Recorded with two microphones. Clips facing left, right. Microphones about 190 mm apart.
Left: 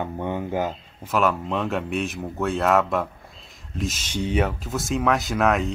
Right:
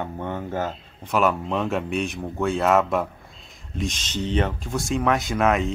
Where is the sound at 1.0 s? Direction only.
Centre (ahead or behind).